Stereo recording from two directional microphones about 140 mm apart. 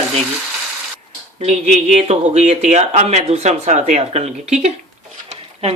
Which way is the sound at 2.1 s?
55° right (ahead or behind).